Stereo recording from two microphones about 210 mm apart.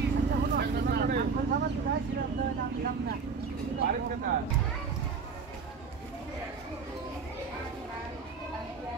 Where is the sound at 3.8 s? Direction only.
45° right (ahead or behind).